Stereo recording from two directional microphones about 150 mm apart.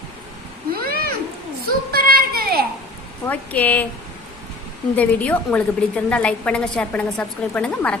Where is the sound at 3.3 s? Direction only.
10° left (ahead or behind).